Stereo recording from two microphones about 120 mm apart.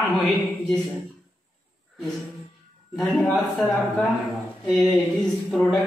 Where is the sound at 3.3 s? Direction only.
Centre (ahead or behind).